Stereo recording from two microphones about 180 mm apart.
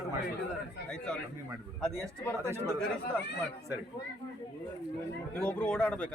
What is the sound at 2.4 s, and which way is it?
Speech, 15° right (ahead or behind).